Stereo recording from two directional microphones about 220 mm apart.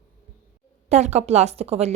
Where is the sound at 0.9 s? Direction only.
30° right (ahead or behind).